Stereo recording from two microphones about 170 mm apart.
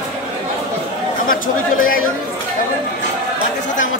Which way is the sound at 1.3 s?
55° left (ahead or behind).